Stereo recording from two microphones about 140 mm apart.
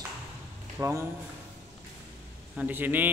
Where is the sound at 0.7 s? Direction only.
20° right (ahead or behind).